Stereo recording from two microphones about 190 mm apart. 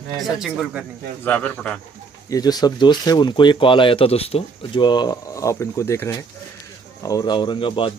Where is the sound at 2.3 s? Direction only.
20° left (ahead or behind).